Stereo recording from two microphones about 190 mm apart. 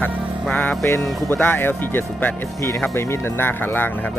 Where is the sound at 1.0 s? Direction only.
Centre (ahead or behind).